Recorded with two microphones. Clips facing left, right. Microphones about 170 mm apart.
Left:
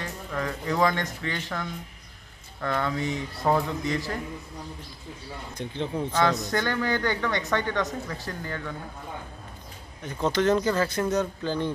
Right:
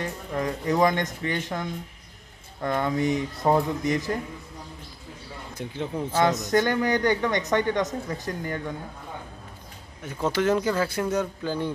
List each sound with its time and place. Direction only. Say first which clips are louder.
0.0 s speech: right 3 dB; 20° right (ahead or behind)
5.5 s speech: even; 5° right (ahead or behind)
6.1 s speech: right 4 dB; 20° right (ahead or behind)
10.0 s speech: even; 10° right (ahead or behind)